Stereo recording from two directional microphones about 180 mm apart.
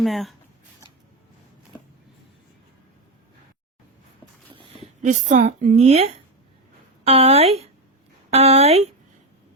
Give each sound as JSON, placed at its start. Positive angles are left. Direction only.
{"t": 0.0, "sound": "speech", "side_deg": 0}
{"t": 4.5, "sound": "a woman's voice", "side_deg": -40}